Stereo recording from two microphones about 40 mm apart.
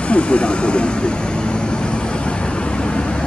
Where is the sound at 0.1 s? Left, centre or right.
Left.